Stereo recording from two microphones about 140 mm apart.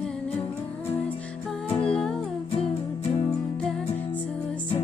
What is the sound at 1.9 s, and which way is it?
Music, 5° left (ahead or behind).